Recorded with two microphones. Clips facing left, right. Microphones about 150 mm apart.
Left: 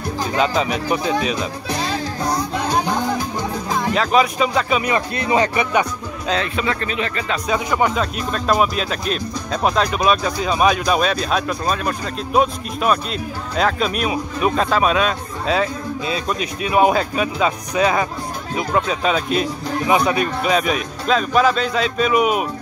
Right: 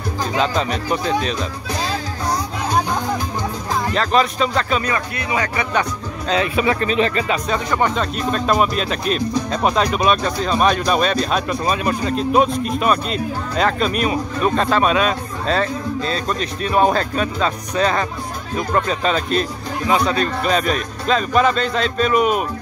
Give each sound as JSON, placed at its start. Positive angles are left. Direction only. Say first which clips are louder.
{"t": 0.4, "sound": "speech", "louder": "left 1 dB", "side_deg": 5}
{"t": 3.8, "sound": "speech", "louder": "left 1 dB", "side_deg": 5}
{"t": 4.9, "sound": "speech", "louder": "left 4 dB", "side_deg": 30}
{"t": 5.6, "sound": "speech", "louder": "left 2 dB", "side_deg": 10}
{"t": 6.3, "sound": "speech", "louder": "right 4 dB", "side_deg": -10}
{"t": 7.4, "sound": "speech", "louder": "left 1 dB", "side_deg": 10}